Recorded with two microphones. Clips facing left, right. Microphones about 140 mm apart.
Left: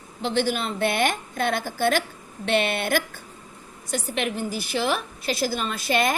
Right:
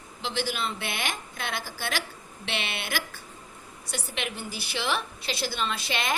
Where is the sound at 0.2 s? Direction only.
50° left (ahead or behind).